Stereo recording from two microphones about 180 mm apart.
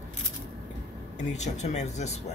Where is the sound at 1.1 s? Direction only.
40° left (ahead or behind).